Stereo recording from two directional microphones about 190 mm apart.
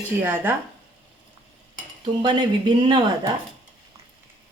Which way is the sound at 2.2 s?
25° right (ahead or behind).